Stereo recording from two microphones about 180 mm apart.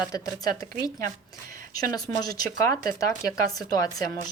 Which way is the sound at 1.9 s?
20° left (ahead or behind).